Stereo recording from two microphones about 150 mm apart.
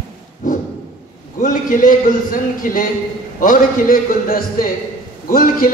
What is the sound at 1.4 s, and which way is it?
A man's voice, 65° left (ahead or behind).